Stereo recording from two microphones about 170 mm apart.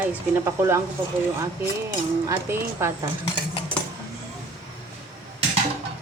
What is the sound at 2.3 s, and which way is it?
Speech, 10° right (ahead or behind).